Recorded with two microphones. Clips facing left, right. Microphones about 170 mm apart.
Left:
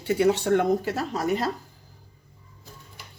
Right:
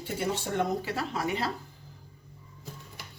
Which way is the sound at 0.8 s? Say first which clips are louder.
Left 5 dB; 40° left (ahead or behind).